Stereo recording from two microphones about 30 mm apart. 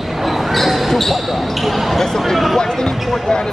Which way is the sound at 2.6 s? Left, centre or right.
Centre.